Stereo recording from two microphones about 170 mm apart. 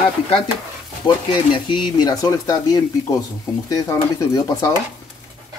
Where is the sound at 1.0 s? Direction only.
25° left (ahead or behind).